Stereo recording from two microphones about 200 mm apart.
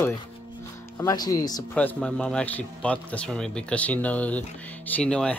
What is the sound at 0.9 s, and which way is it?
Speech, 20° left (ahead or behind).